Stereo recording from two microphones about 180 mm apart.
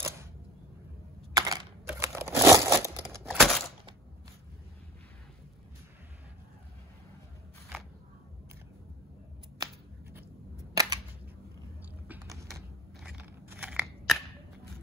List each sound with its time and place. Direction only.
1.3 s camera: 20° right (ahead or behind)
1.9 s crumpling: 15° right (ahead or behind)
3.3 s a sound: centre (ahead or behind)
9.6 s scissors: 20° right (ahead or behind)
10.7 s a sound: 20° right (ahead or behind)
11.8 s biting: 15° right (ahead or behind)
13.0 s scissors: 10° right (ahead or behind)